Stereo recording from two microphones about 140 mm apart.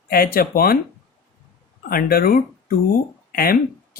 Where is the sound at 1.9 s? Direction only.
90° left.